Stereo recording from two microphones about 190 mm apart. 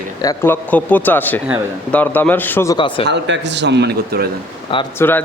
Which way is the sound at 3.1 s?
65° right (ahead or behind).